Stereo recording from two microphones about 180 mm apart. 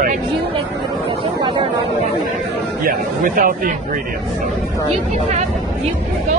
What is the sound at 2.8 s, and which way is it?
Speech, 50° right (ahead or behind).